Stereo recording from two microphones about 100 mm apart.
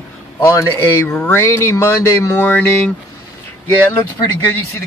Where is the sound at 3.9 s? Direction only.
20° left (ahead or behind).